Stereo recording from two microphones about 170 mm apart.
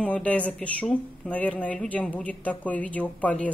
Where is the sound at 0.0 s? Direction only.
10° left (ahead or behind).